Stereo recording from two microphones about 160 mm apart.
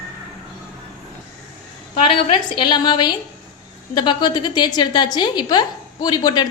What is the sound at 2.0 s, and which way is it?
A woman's voice, 35° left (ahead or behind).